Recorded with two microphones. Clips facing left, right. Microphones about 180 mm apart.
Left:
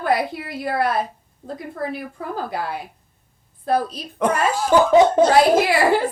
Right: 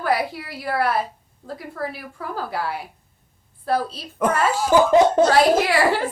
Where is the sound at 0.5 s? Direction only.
20° left (ahead or behind).